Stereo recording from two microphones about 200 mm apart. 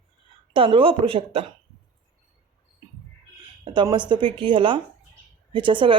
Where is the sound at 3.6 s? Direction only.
25° right (ahead or behind).